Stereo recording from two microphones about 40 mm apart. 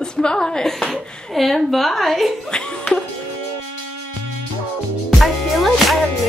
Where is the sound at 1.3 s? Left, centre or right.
Centre.